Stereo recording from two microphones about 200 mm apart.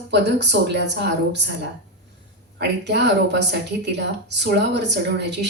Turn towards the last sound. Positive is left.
turn(degrees=-60)  # may be behind; listen again after turning